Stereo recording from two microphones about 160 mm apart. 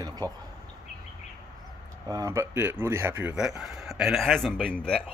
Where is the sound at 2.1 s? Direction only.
20° right (ahead or behind).